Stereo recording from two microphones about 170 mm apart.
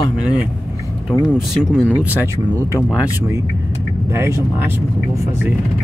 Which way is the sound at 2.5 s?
15° left (ahead or behind).